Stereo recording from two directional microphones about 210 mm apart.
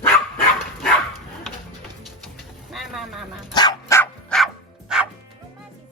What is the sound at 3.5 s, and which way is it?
Dog, 15° left (ahead or behind).